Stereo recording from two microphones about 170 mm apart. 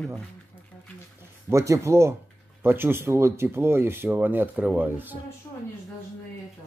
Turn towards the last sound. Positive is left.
turn(degrees=-10)  # may be behind; listen again after turning